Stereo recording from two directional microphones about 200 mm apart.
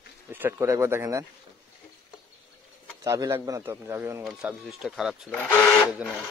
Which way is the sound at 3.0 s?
15° right (ahead or behind).